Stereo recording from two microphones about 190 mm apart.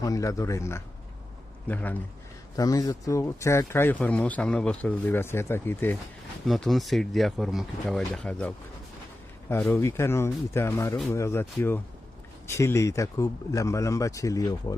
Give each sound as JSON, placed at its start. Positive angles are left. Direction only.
{"t": 0.0, "sound": "speech", "side_deg": 15}
{"t": 6.5, "sound": "speech", "side_deg": 0}